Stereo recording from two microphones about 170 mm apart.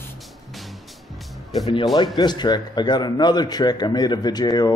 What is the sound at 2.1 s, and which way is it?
Speech, 25° left (ahead or behind).